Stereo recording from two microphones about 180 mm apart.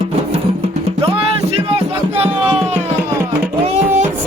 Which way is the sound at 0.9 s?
35° right (ahead or behind).